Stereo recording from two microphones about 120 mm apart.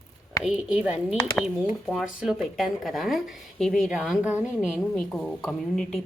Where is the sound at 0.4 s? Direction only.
5° right (ahead or behind).